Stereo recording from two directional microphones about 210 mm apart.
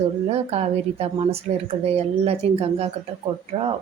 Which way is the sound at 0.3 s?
30° right (ahead or behind).